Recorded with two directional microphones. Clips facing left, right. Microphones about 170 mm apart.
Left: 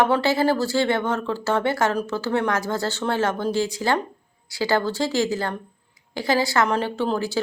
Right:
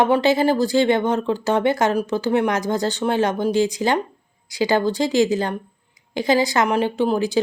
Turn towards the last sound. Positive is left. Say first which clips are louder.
# right 4 dB
turn(degrees=-15)  # may be behind; listen again after turning